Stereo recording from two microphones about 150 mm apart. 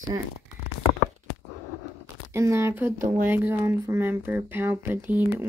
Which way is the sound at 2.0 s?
20° right (ahead or behind).